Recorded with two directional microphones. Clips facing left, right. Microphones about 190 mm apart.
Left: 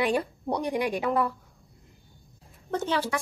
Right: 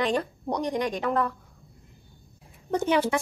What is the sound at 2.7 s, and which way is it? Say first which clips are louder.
Speech: right 4 dB; 15° right (ahead or behind).